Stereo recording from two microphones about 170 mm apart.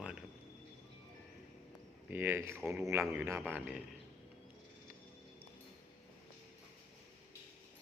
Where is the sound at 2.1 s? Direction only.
10° right (ahead or behind).